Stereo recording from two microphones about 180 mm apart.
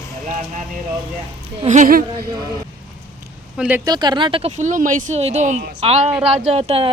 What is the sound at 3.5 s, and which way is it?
Speech, 5° right (ahead or behind).